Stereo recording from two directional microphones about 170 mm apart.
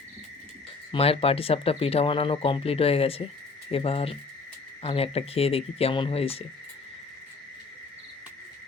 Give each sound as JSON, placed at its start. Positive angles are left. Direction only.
{"t": 0.9, "sound": "speech", "side_deg": 35}